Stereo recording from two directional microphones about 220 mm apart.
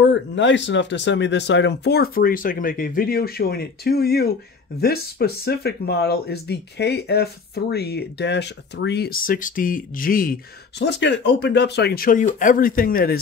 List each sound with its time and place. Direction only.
0.0 s speech: 55° left (ahead or behind)